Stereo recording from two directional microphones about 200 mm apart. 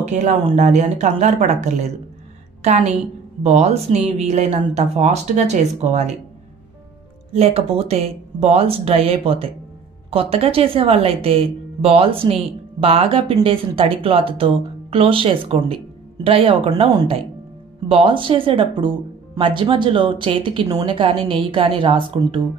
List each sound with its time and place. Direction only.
0.0 s a woman's voice: 35° right (ahead or behind)
7.3 s speech: 30° right (ahead or behind)